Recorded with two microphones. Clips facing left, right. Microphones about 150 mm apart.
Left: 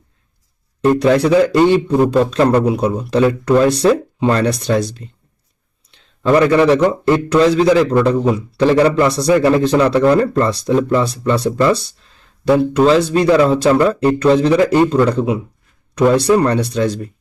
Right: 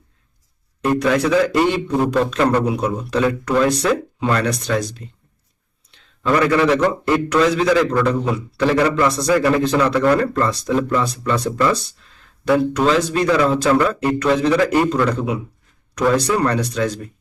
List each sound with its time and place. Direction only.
0.8 s a man's voice: 30° left (ahead or behind)
6.2 s a man's voice: 30° left (ahead or behind)